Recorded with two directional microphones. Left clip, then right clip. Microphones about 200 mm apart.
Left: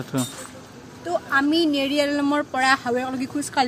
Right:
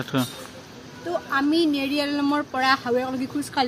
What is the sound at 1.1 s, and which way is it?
Speech, 15° left (ahead or behind).